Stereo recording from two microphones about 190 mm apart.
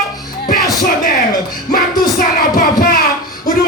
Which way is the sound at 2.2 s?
45° left (ahead or behind).